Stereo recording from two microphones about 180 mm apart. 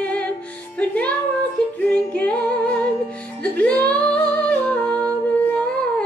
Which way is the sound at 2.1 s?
10° left (ahead or behind).